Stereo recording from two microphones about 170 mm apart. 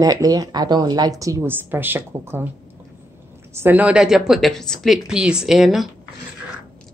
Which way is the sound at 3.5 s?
10° right (ahead or behind).